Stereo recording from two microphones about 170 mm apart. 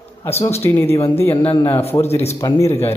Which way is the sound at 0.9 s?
15° left (ahead or behind).